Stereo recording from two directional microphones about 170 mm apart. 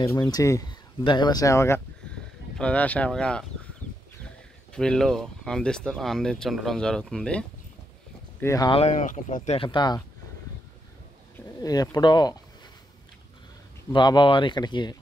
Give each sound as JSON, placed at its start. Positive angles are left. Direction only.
{"t": 0.0, "sound": "speech", "side_deg": 20}
{"t": 4.7, "sound": "speech", "side_deg": 5}
{"t": 8.4, "sound": "speech", "side_deg": 15}
{"t": 8.6, "sound": "speech", "side_deg": 40}
{"t": 9.6, "sound": "speech", "side_deg": 30}
{"t": 11.6, "sound": "speech", "side_deg": 20}
{"t": 13.9, "sound": "speech", "side_deg": 25}